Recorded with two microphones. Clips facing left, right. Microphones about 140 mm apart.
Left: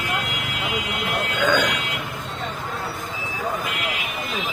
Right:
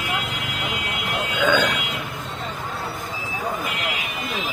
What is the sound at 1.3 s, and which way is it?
Speech, centre (ahead or behind).